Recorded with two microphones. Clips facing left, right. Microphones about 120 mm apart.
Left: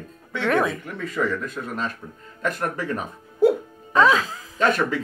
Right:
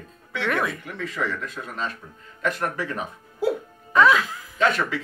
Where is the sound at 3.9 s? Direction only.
35° left (ahead or behind).